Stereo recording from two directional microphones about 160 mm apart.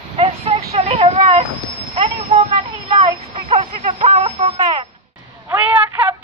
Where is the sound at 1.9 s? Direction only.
40° right (ahead or behind).